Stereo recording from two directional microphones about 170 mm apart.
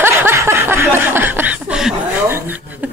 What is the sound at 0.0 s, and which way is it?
Snicker, 15° right (ahead or behind).